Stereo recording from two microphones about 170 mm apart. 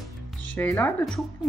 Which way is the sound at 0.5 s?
10° left (ahead or behind).